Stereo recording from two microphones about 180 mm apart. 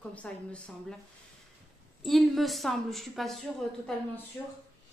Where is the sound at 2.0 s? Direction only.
Centre (ahead or behind).